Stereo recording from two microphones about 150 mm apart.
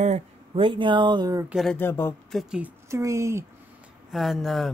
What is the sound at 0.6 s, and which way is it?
Speech, 35° right (ahead or behind).